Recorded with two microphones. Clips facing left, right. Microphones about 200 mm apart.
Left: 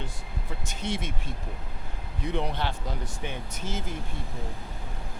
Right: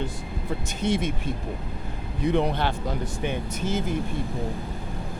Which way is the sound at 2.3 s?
60° right (ahead or behind).